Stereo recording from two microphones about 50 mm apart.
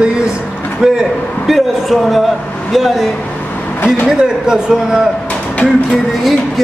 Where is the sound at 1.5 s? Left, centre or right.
Centre.